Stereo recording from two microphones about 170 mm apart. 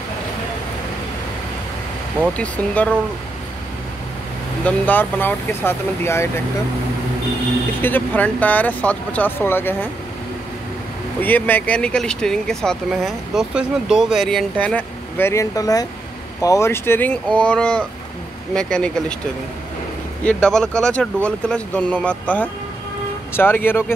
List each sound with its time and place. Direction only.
2.3 s speech: 5° left (ahead or behind)
4.6 s speech: 10° left (ahead or behind)
7.8 s speech: 10° left (ahead or behind)
11.1 s speech: 10° left (ahead or behind)
20.2 s speech: 5° left (ahead or behind)